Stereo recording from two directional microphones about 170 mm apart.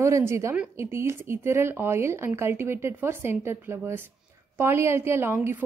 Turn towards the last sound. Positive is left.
turn(degrees=-10)  # may be behind; listen again after turning